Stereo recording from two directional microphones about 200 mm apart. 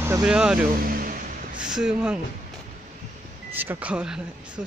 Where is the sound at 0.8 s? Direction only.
45° right (ahead or behind).